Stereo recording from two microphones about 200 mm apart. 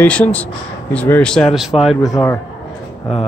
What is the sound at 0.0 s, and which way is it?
Speech, 10° left (ahead or behind).